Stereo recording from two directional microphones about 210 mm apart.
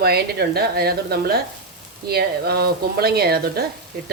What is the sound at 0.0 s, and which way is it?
Speech, 50° right (ahead or behind).